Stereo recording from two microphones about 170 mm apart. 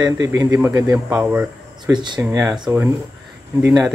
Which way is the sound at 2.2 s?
10° right (ahead or behind).